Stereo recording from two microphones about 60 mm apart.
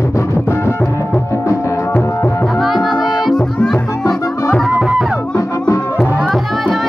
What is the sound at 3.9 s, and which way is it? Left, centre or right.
Music, left.